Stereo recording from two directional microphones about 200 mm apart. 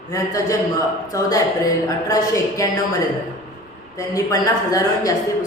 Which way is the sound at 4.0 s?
15° left (ahead or behind).